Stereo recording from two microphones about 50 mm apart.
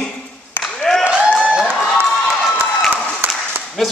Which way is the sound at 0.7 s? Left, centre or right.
Centre.